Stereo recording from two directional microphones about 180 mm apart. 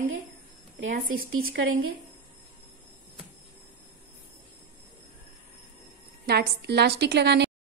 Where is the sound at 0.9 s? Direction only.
55° right (ahead or behind).